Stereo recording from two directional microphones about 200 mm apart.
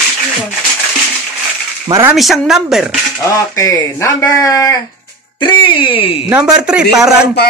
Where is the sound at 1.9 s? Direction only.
15° right (ahead or behind).